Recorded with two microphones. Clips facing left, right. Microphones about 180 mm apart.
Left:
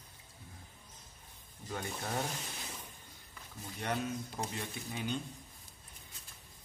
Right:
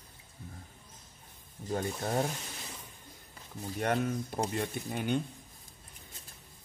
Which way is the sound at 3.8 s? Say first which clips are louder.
Right 6 dB; 55° right (ahead or behind).